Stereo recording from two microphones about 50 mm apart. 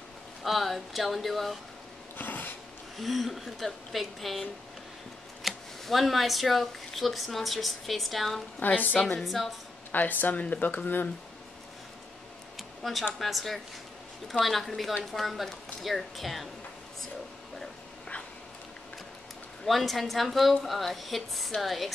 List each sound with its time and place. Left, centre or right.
0.4 s a woman's voice: centre
2.1 s a sound: left
3.0 s a woman's voice: centre
8.5 s speech: left
9.2 s a woman's voice: centre
9.9 s speech: left
12.5 s a sound: centre
13.2 s a woman's voice: centre
19.6 s a woman's voice: centre